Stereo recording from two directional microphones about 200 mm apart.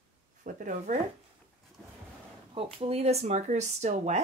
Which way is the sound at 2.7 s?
30° right (ahead or behind).